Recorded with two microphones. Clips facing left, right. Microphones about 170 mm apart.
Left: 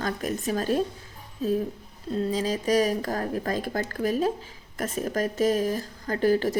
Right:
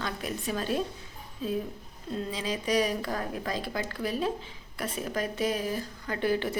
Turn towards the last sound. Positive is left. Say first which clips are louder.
# left 6 dB
turn(degrees=40)  # may be behind; listen again after turning